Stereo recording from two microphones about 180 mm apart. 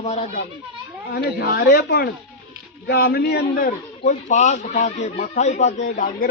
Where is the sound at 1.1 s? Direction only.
60° left (ahead or behind).